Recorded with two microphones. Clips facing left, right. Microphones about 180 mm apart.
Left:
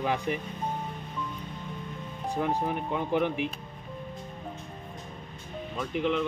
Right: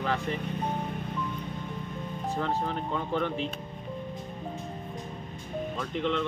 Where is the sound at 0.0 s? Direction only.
15° left (ahead or behind).